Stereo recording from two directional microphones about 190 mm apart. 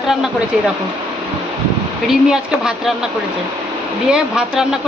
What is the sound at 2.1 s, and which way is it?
Speech, 5° right (ahead or behind).